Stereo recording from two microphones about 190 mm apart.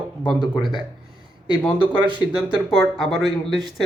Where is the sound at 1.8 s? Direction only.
25° right (ahead or behind).